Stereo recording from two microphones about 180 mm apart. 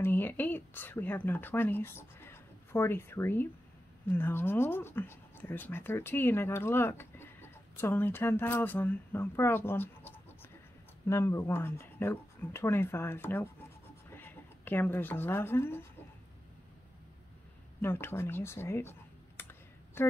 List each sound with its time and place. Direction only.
0.0 s speech: 10° left (ahead or behind)
17.8 s speech: 15° left (ahead or behind)